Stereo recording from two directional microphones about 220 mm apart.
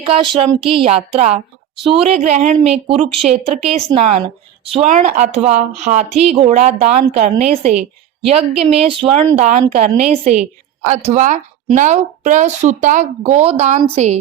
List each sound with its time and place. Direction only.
0.1 s a woman's voice: 25° right (ahead or behind)
0.6 s a woman's voice: centre (ahead or behind)
0.9 s a woman's voice: 25° right (ahead or behind)